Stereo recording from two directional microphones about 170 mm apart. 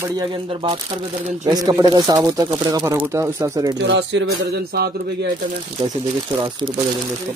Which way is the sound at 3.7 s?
90° right.